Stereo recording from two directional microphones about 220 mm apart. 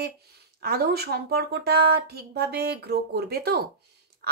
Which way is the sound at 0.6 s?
45° right (ahead or behind).